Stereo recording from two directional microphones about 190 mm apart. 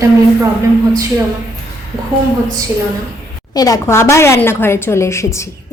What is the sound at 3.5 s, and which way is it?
A woman's voice, 20° left (ahead or behind).